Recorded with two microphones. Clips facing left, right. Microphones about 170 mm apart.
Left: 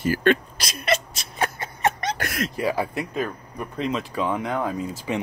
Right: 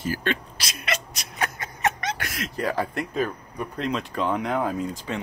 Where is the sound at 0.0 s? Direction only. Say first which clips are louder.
Left 7 dB; 60° left (ahead or behind).